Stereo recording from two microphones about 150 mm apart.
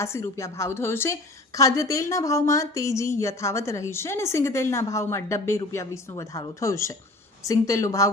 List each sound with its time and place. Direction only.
0.0 s a woman's voice: 20° left (ahead or behind)